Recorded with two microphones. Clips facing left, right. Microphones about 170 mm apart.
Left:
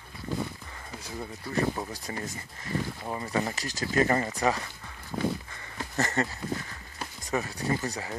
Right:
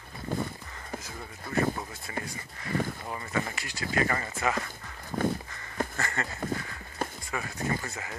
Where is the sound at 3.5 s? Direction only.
40° left (ahead or behind).